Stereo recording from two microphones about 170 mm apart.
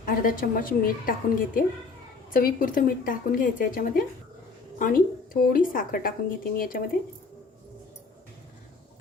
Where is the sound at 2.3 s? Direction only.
55° left (ahead or behind).